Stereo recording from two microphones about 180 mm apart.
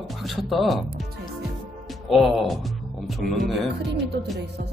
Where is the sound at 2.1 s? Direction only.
Centre (ahead or behind).